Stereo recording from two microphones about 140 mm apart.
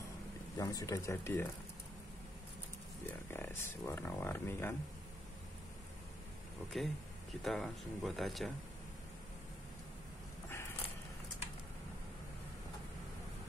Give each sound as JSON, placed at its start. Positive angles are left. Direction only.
{"t": 0.6, "sound": "speech", "side_deg": 25}
{"t": 3.1, "sound": "speech", "side_deg": 15}
{"t": 6.7, "sound": "speech", "side_deg": 0}